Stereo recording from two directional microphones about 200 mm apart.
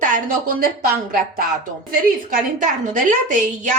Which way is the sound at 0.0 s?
45° right (ahead or behind).